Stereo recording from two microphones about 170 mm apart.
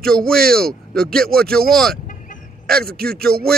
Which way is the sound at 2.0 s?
50° left (ahead or behind).